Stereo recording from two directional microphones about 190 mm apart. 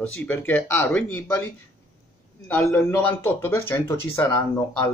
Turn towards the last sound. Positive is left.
turn(degrees=15)  # may be behind; listen again after turning